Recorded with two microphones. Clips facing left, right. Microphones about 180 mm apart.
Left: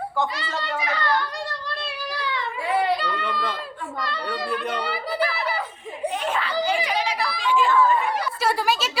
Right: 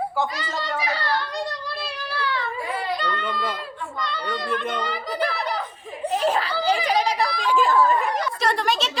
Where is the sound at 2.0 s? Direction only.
15° left (ahead or behind).